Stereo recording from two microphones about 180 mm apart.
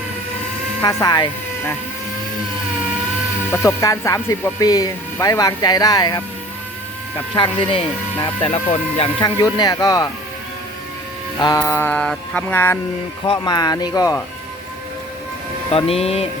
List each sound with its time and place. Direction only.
0.8 s speech: 20° left (ahead or behind)
3.5 s speech: 15° left (ahead or behind)
7.3 s speech: 25° left (ahead or behind)
9.2 s speech: 20° left (ahead or behind)
11.3 s music: 20° left (ahead or behind)
13.2 s speech: 25° left (ahead or behind)
15.7 s speech: 35° left (ahead or behind)